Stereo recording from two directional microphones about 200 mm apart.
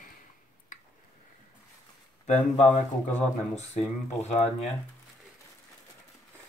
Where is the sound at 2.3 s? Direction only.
35° left (ahead or behind).